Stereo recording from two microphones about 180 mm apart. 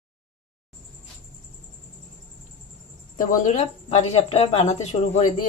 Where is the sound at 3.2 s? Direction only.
45° left (ahead or behind).